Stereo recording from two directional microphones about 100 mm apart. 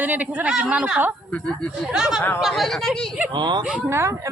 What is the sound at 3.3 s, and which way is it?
Speech, 50° right (ahead or behind).